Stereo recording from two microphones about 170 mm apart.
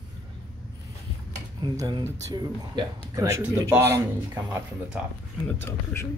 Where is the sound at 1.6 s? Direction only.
25° right (ahead or behind).